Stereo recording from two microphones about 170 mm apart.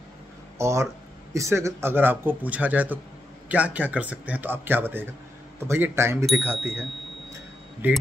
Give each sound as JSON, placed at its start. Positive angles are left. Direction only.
{"t": 0.6, "sound": "speech", "side_deg": -15}
{"t": 7.8, "sound": "speech", "side_deg": -10}